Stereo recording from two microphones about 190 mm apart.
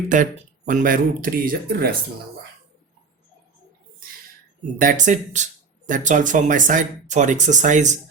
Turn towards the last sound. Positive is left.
turn(degrees=-40)  # may be behind; listen again after turning